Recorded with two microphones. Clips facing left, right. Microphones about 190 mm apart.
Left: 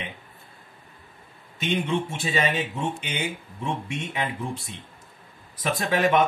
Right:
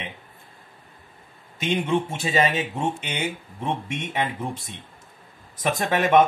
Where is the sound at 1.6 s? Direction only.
40° right (ahead or behind).